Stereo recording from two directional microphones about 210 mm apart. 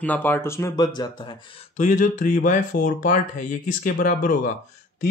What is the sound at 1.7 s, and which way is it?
Speech, 35° left (ahead or behind).